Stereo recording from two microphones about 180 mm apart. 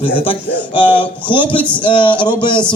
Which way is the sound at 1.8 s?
25° left (ahead or behind).